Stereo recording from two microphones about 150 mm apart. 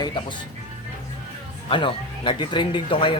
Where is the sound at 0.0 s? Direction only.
30° left (ahead or behind).